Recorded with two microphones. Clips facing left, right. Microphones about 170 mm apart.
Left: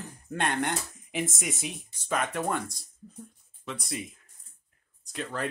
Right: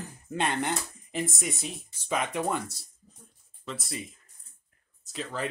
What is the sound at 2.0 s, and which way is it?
Speech, 10° right (ahead or behind).